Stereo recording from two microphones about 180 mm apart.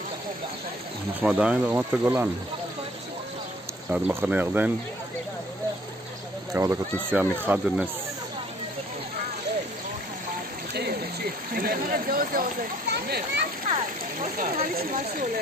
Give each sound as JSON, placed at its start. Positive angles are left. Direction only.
{"t": 1.2, "sound": "speech", "side_deg": -5}
{"t": 3.9, "sound": "speech", "side_deg": -10}
{"t": 6.5, "sound": "speech", "side_deg": -15}
{"t": 10.7, "sound": "rain", "side_deg": -60}
{"t": 11.5, "sound": "speech", "side_deg": -55}
{"t": 14.2, "sound": "speech", "side_deg": -50}